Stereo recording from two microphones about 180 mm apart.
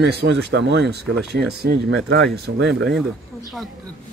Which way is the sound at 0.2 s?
70° right (ahead or behind).